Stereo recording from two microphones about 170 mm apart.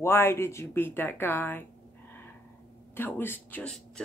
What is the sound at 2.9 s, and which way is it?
Speech, 10° left (ahead or behind).